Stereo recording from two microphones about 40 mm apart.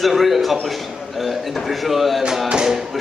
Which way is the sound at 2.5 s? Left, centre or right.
Right.